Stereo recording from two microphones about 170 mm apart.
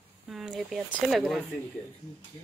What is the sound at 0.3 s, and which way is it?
Speech, centre (ahead or behind).